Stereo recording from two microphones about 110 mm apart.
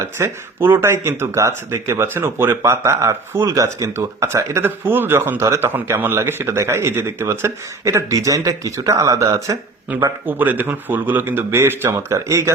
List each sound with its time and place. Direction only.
0.0 s speech: 20° right (ahead or behind)
9.9 s speech: 15° right (ahead or behind)